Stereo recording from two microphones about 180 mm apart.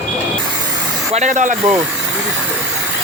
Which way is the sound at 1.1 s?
40° right (ahead or behind).